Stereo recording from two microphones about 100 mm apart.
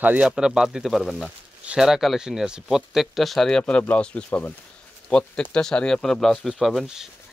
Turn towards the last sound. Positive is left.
turn(degrees=-5)  # may be behind; listen again after turning